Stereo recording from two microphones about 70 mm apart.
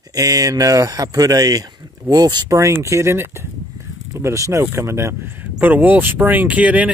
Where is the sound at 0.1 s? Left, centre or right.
Right.